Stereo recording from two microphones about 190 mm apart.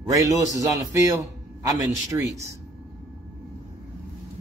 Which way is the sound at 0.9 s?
15° right (ahead or behind).